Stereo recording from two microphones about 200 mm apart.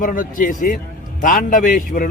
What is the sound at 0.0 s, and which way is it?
A man's voice, 40° left (ahead or behind).